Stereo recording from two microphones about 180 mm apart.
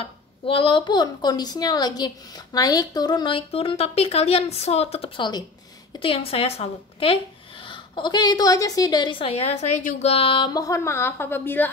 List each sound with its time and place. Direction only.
0.0 s a woman's voice: 30° left (ahead or behind)
10.1 s speech: 30° left (ahead or behind); by 11.7 s 10° left (ahead or behind)